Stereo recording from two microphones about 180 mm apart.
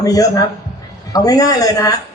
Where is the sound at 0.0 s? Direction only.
20° left (ahead or behind).